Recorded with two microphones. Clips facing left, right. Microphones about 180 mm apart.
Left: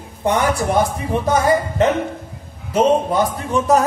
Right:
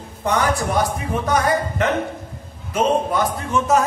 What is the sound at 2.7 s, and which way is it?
A man's voice, 30° left (ahead or behind).